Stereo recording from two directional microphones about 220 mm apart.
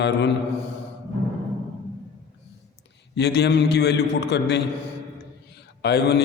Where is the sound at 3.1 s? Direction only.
50° left (ahead or behind).